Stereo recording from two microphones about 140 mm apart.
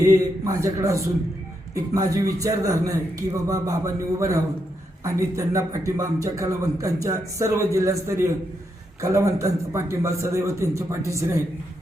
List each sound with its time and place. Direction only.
0.0 s a man's voice: 20° right (ahead or behind)